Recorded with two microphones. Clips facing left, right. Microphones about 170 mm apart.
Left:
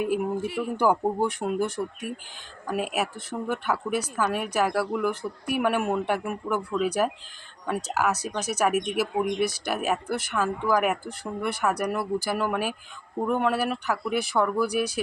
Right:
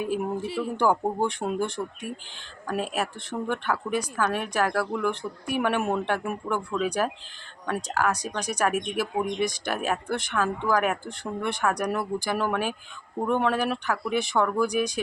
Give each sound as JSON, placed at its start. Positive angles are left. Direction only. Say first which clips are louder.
{"t": 0.4, "sound": "speech", "louder": "even", "side_deg": -35}
{"t": 0.8, "sound": "a woman's voice", "louder": "left 1 dB", "side_deg": 5}